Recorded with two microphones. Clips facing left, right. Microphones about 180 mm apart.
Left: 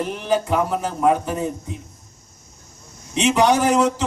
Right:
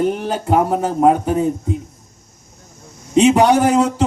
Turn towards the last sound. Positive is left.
turn(degrees=-60)  # may be behind; listen again after turning